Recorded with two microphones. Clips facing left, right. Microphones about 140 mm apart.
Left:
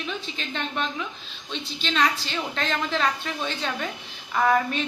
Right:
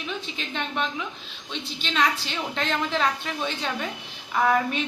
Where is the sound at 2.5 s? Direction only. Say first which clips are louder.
Right 1 dB; 15° right (ahead or behind).